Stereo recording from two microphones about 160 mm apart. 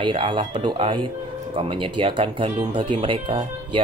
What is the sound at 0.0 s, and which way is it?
Speech, 30° right (ahead or behind).